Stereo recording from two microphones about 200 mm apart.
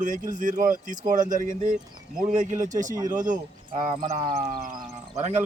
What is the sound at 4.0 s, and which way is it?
Speech, 30° right (ahead or behind).